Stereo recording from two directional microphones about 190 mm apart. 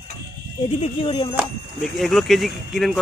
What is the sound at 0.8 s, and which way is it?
Speech, 30° left (ahead or behind).